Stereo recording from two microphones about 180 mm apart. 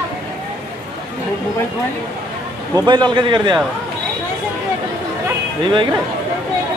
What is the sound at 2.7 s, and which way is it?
Speech, 20° right (ahead or behind).